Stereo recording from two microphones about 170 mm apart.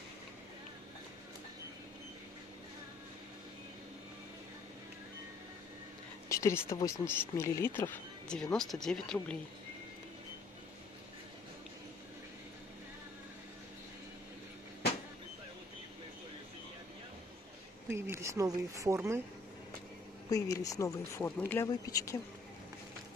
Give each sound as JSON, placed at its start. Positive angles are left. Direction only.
{"t": 6.2, "sound": "speech", "side_deg": 15}
{"t": 17.8, "sound": "speech", "side_deg": -15}
{"t": 20.2, "sound": "speech", "side_deg": 20}